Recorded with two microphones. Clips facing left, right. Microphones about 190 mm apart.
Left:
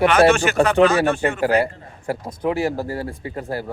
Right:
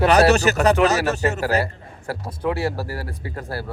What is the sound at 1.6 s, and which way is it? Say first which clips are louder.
Speech: left 4 dB; 20° left (ahead or behind).